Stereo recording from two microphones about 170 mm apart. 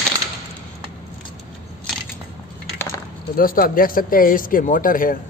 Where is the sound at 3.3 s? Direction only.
55° left (ahead or behind).